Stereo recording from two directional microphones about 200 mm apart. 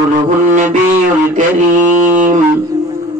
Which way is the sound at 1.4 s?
40° right (ahead or behind).